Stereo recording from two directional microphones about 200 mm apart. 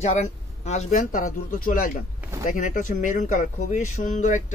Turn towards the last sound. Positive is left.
turn(degrees=35)  # may be behind; listen again after turning